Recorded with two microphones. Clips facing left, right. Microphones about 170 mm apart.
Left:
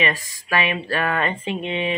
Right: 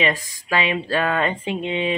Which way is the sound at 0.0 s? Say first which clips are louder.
Right 2 dB; 20° right (ahead or behind).